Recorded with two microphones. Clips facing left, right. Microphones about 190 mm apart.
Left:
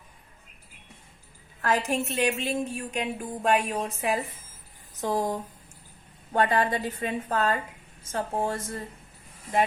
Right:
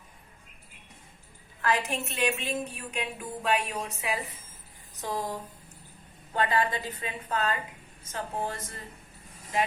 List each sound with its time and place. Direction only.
1.6 s a woman's voice: 45° left (ahead or behind)
4.9 s a sound: 50° left (ahead or behind)
6.3 s a woman's voice: 50° left (ahead or behind)